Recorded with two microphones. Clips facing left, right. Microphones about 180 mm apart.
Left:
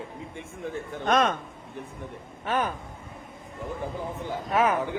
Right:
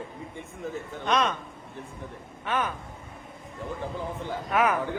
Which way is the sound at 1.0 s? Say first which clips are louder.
Left 3 dB; 50° left (ahead or behind).